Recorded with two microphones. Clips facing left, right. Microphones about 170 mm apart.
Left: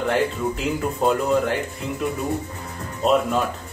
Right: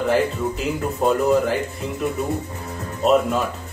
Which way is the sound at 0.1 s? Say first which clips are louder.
Right 2 dB; centre (ahead or behind).